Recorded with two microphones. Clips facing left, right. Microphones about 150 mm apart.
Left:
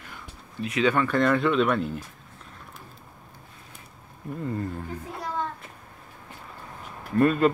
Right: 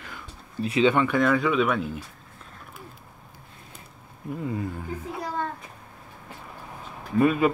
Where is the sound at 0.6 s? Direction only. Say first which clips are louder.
Right 3 dB; 30° right (ahead or behind).